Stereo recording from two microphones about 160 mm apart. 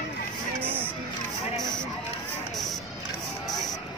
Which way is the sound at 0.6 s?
10° right (ahead or behind).